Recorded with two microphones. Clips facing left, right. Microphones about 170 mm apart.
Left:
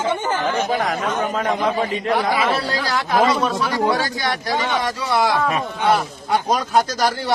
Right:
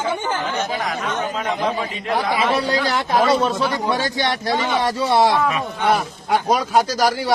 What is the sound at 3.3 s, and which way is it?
Speech, 25° right (ahead or behind).